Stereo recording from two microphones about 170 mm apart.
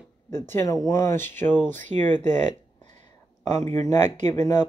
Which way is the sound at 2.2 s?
45° right (ahead or behind).